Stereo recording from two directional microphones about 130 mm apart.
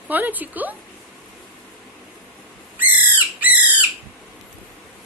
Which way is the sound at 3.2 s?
10° right (ahead or behind).